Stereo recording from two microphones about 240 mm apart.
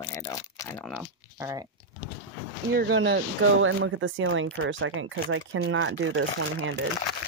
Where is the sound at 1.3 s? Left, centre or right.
Centre.